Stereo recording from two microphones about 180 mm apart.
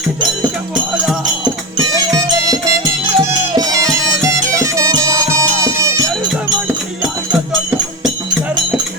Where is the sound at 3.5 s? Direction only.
20° right (ahead or behind).